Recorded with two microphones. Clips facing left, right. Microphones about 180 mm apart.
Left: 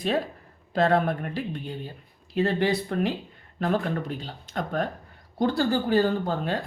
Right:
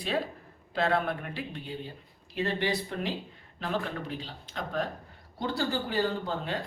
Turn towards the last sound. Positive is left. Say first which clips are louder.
# left 5 dB
turn(degrees=50)  # may be behind; listen again after turning